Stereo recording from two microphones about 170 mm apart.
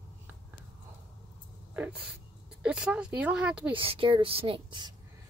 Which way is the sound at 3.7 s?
30° right (ahead or behind).